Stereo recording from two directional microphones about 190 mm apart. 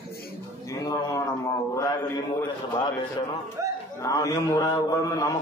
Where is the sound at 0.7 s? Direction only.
15° left (ahead or behind).